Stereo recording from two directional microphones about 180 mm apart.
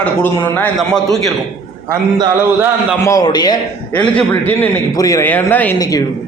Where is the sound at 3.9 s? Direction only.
5° left (ahead or behind).